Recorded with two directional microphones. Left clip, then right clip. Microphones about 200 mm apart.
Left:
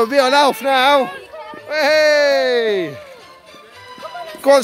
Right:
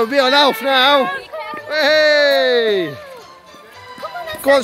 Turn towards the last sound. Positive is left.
turn(degrees=60)  # may be behind; listen again after turning